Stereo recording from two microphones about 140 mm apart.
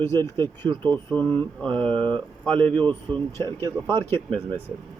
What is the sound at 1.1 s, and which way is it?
Speech, 10° left (ahead or behind).